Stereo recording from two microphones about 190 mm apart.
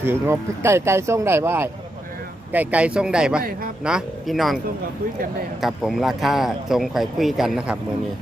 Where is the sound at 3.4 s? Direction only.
50° right (ahead or behind).